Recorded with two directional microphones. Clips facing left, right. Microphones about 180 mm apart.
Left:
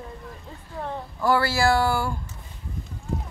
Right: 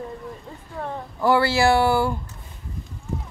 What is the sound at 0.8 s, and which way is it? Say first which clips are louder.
Speech: right 3 dB; 20° right (ahead or behind).